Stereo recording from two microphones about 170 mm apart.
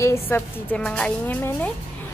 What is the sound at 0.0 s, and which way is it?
Speech, 15° left (ahead or behind).